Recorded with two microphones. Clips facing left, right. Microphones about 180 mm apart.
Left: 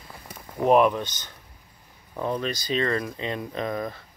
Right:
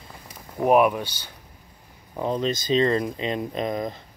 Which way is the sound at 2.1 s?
20° right (ahead or behind).